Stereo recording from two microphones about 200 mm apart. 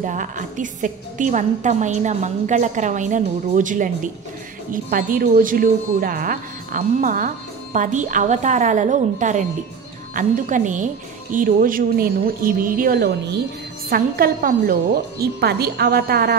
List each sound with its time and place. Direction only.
0.0 s a woman's voice: 40° right (ahead or behind)